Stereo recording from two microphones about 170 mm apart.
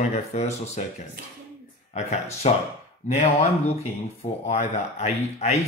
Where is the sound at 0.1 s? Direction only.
40° left (ahead or behind).